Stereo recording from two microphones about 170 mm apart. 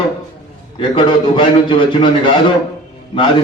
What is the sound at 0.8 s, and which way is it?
A man's voice, 30° left (ahead or behind).